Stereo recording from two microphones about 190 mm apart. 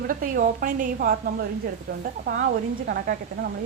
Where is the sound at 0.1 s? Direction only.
45° right (ahead or behind).